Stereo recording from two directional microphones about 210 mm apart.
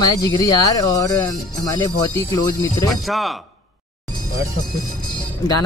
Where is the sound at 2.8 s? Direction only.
Centre (ahead or behind).